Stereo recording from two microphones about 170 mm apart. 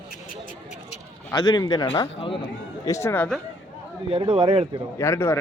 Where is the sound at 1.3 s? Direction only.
25° left (ahead or behind); by 3.4 s 5° left (ahead or behind).